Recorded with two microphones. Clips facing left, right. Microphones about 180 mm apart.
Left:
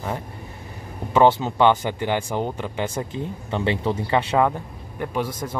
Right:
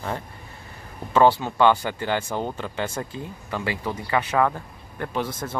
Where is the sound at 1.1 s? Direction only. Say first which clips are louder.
Left 1 dB; 20° left (ahead or behind).